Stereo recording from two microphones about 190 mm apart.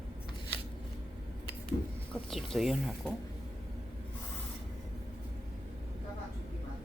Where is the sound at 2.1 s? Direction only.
Centre (ahead or behind).